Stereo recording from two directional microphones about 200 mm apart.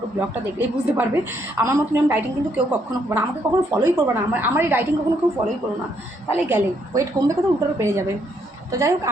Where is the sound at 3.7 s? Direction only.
10° right (ahead or behind).